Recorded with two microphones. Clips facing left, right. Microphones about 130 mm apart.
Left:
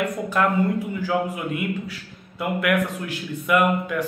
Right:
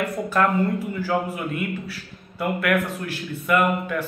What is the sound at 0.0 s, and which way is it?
A man's voice, 15° left (ahead or behind).